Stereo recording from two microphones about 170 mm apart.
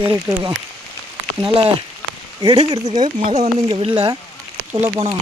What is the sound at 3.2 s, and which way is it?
Speech, 35° right (ahead or behind).